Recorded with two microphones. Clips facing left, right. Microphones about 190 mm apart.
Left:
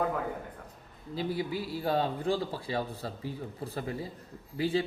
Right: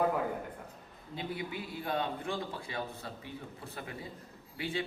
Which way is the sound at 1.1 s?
35° left (ahead or behind).